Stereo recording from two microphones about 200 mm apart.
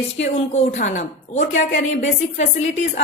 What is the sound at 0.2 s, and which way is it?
A woman's voice, 35° left (ahead or behind).